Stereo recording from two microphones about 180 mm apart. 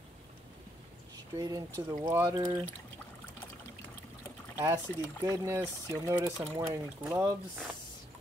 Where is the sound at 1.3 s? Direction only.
20° right (ahead or behind).